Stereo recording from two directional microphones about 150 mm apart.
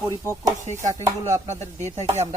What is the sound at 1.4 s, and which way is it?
Speech, 50° right (ahead or behind).